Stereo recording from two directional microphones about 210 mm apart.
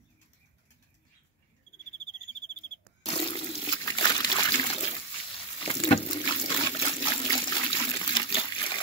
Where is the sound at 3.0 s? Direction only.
25° left (ahead or behind).